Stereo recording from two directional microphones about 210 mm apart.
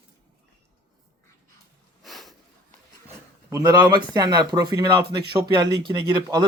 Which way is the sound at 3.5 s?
15° right (ahead or behind).